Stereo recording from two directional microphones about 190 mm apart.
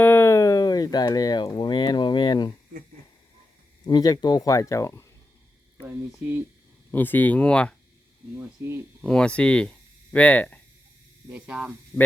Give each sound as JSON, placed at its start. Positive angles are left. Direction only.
{"t": 0.0, "sound": "a sound", "side_deg": 10}
{"t": 3.8, "sound": "speech", "side_deg": 20}
{"t": 6.9, "sound": "speech", "side_deg": 10}
{"t": 8.4, "sound": "speech", "side_deg": -10}
{"t": 9.0, "sound": "speech", "side_deg": 5}
{"t": 11.3, "sound": "speech", "side_deg": -5}